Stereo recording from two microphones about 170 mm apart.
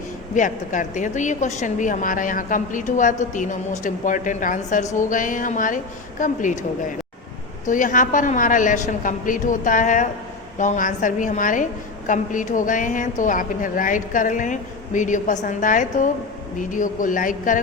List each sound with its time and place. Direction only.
0.3 s a woman's voice: 50° left (ahead or behind)
7.6 s a woman's voice: 50° left (ahead or behind)